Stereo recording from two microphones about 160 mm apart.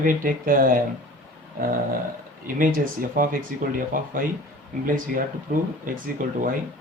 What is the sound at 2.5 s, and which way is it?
Speech, 60° right (ahead or behind).